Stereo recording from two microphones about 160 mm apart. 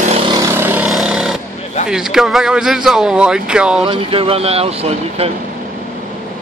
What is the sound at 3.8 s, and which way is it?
Speech, 35° right (ahead or behind).